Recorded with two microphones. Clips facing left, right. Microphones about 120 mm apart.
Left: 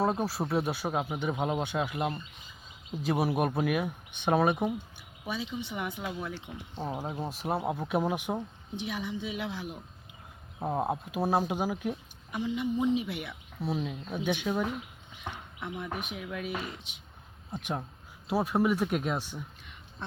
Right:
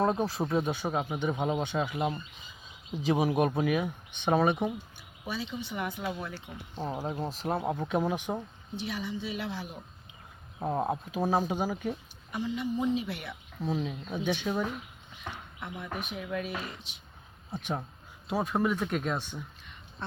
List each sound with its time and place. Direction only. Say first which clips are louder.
0.0 s a woman's voice: right 1 dB; 5° left (ahead or behind)
15.8 s a woman's voice: right 1 dB; 15° left (ahead or behind)
18.3 s speech: left 2 dB; 5° left (ahead or behind)